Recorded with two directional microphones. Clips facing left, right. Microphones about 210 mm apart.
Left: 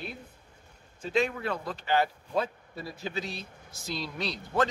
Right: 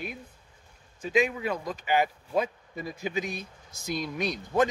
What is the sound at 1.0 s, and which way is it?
A man's voice, 10° right (ahead or behind).